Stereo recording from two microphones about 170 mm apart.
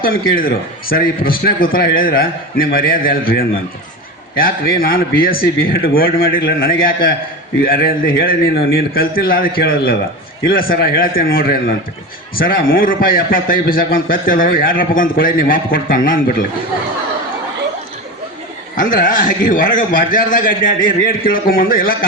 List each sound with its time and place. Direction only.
0.0 s a man's voice: 60° left (ahead or behind)
18.8 s a man's voice: 55° left (ahead or behind)